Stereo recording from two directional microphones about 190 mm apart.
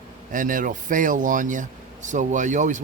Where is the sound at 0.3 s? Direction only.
45° right (ahead or behind).